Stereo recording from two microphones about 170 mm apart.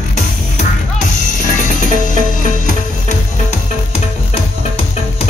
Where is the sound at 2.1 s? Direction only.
45° left (ahead or behind).